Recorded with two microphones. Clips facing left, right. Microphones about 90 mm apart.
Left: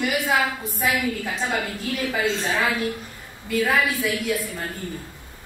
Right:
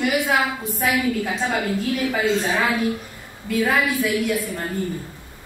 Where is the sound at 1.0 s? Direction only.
15° right (ahead or behind).